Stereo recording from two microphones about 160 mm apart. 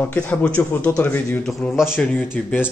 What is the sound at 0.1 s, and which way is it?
Speech, 10° left (ahead or behind).